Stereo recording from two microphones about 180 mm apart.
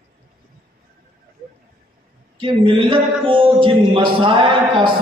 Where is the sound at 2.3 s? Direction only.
30° right (ahead or behind).